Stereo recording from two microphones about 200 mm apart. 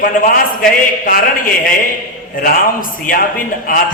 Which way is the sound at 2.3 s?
45° left (ahead or behind).